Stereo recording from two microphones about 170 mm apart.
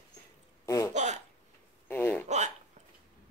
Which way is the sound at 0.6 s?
20° left (ahead or behind).